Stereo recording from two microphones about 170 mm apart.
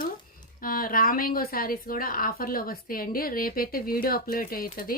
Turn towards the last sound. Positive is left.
turn(degrees=60)  # may be behind; listen again after turning